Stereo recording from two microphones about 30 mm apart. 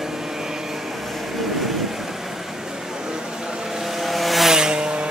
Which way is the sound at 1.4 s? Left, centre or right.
Centre.